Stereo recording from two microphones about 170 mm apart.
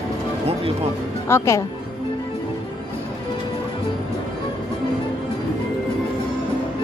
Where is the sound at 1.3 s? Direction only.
15° left (ahead or behind).